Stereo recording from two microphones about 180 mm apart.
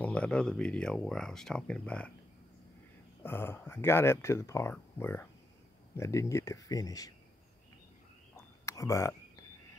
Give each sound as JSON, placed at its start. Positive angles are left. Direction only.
{"t": 0.0, "sound": "speech", "side_deg": 5}
{"t": 3.2, "sound": "speech", "side_deg": 10}
{"t": 8.6, "sound": "speech", "side_deg": 15}